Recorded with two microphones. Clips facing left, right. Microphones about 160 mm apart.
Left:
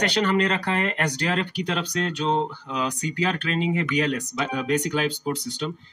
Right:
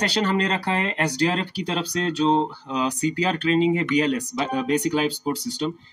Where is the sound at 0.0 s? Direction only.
35° right (ahead or behind).